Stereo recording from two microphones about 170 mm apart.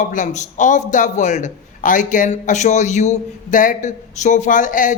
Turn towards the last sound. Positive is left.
turn(degrees=50)  # may be behind; listen again after turning